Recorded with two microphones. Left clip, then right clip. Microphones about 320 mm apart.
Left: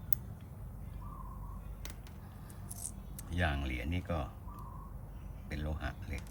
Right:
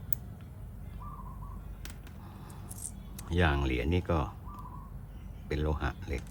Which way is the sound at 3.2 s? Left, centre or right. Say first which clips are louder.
Right 7 dB; centre.